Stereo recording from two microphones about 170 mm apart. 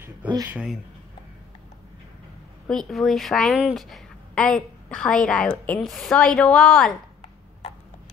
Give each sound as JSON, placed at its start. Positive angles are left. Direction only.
{"t": 0.5, "sound": "a woman's voice", "side_deg": -5}
{"t": 2.7, "sound": "a woman's voice", "side_deg": 0}